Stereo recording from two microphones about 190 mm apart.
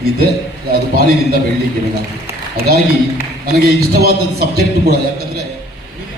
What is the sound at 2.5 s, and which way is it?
A man's voice, 55° right (ahead or behind).